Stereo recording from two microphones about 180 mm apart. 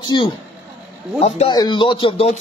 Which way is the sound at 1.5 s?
25° left (ahead or behind).